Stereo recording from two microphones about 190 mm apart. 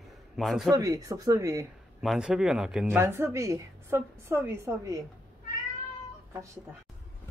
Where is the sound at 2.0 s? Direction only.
5° right (ahead or behind).